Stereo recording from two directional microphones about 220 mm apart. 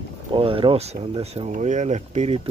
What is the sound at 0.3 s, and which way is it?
Speech, 25° right (ahead or behind).